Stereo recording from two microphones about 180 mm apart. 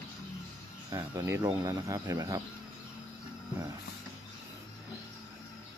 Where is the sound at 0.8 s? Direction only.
20° right (ahead or behind).